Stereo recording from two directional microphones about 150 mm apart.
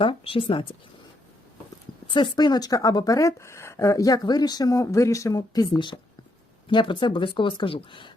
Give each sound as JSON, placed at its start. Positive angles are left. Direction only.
{"t": 0.0, "sound": "speech", "side_deg": 35}
{"t": 2.1, "sound": "a woman's voice", "side_deg": 30}